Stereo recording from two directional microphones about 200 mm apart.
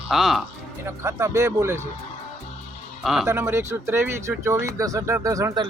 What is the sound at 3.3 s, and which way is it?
A man's voice, 15° right (ahead or behind).